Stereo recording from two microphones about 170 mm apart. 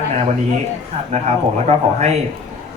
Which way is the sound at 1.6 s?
40° right (ahead or behind).